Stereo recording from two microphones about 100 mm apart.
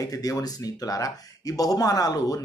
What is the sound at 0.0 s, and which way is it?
Speech, 35° left (ahead or behind).